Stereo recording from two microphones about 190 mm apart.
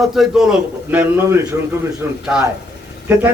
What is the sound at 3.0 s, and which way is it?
Speech, 10° right (ahead or behind).